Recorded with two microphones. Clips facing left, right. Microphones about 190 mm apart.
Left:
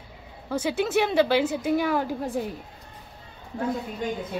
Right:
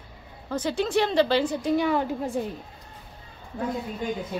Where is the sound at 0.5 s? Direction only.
10° left (ahead or behind).